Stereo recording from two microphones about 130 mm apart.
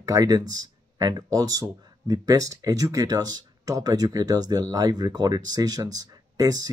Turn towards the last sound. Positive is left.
turn(degrees=-30)  # may be behind; listen again after turning